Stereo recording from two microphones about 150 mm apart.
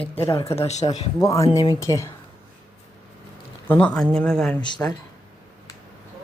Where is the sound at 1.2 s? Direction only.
20° left (ahead or behind).